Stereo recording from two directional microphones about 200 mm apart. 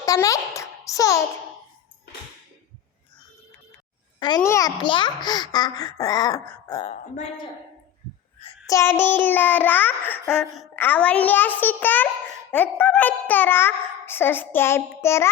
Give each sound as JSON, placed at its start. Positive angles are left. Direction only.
{"t": 0.0, "sound": "a sound", "side_deg": 15}
{"t": 4.2, "sound": "a child's voice", "side_deg": 20}
{"t": 6.7, "sound": "a woman's voice", "side_deg": 30}
{"t": 8.6, "sound": "child singing", "side_deg": 15}